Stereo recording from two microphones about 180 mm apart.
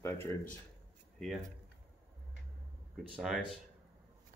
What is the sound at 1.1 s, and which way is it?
Speech, centre (ahead or behind).